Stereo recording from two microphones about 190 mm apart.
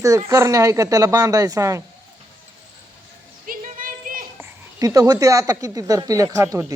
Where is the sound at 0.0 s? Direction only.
15° right (ahead or behind).